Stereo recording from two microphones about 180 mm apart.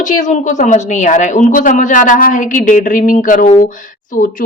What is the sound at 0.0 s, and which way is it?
Speech, 45° left (ahead or behind).